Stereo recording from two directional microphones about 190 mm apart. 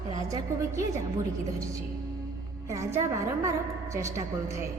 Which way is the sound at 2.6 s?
15° right (ahead or behind).